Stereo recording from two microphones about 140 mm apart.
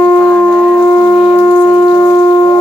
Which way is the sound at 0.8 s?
15° left (ahead or behind).